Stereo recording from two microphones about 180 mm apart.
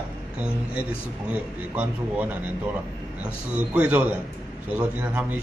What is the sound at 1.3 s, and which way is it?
A man's voice, 10° right (ahead or behind).